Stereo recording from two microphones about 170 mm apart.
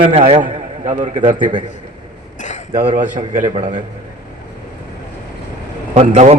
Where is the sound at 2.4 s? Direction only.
45° left (ahead or behind).